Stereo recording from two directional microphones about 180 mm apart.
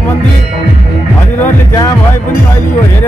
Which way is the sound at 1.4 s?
20° left (ahead or behind).